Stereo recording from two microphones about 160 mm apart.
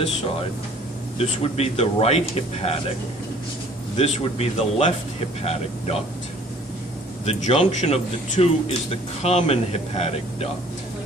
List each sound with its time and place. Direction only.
1.1 s speech: 40° left (ahead or behind)
3.9 s speech: 40° left (ahead or behind)
7.2 s a man's voice: 45° left (ahead or behind)